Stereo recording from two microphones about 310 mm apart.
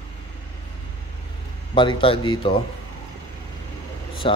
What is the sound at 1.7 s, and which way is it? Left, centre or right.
Speech, centre.